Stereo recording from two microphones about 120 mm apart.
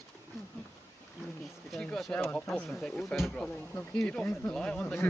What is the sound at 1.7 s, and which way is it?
Speech, 5° left (ahead or behind).